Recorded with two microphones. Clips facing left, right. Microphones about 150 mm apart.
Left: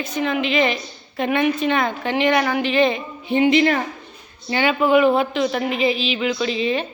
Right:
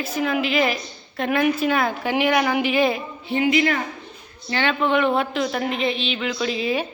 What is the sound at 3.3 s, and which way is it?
Speech, 25° left (ahead or behind).